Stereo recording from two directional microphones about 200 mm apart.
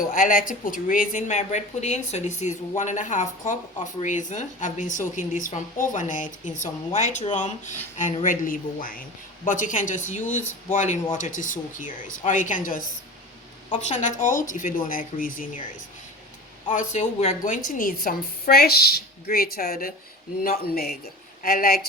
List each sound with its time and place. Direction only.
0.0 s a woman's voice: 40° left (ahead or behind)
16.7 s a woman's voice: 35° left (ahead or behind)